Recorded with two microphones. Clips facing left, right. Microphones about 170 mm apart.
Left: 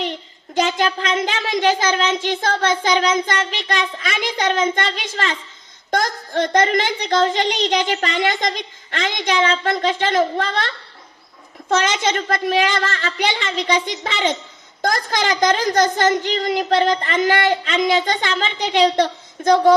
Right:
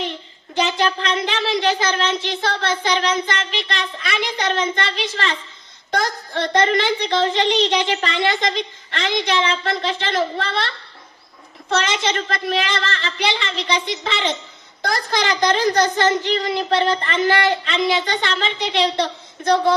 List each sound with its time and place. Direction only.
0.6 s speech: 45° left (ahead or behind)
11.7 s speech: 45° left (ahead or behind)